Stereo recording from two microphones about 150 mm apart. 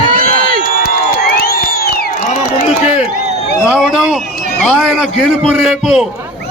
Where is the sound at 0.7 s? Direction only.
85° left.